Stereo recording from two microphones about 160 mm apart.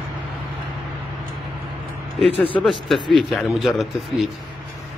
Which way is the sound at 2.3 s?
35° left (ahead or behind).